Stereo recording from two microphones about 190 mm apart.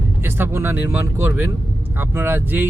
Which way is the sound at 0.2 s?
10° right (ahead or behind).